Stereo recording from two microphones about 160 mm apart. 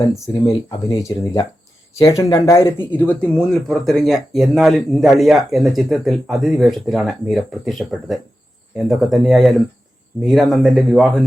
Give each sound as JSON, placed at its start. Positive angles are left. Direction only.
{"t": 0.4, "sound": "speech", "side_deg": 20}
{"t": 3.0, "sound": "speech", "side_deg": 10}